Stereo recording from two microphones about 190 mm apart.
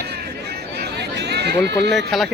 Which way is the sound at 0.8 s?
60° right (ahead or behind).